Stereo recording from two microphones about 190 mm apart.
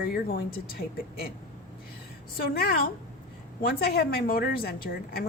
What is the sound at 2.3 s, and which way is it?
A woman's voice, 55° left (ahead or behind).